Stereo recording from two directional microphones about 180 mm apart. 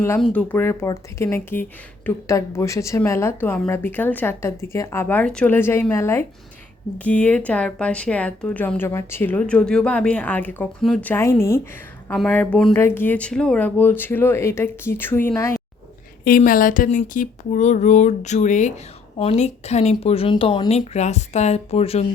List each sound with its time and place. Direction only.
0.2 s speech: 10° left (ahead or behind)
16.2 s speech: 50° left (ahead or behind); by 22.0 s 35° left (ahead or behind)